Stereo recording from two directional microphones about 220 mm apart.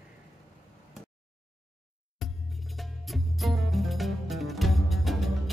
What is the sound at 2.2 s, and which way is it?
Music, centre (ahead or behind).